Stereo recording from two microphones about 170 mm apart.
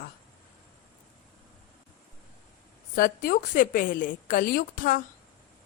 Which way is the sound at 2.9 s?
60° left (ahead or behind).